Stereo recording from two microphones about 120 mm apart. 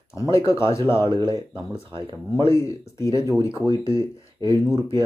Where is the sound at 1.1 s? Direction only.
40° right (ahead or behind).